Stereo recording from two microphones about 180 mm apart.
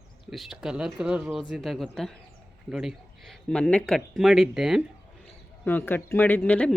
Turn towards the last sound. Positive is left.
turn(degrees=10)  # may be behind; listen again after turning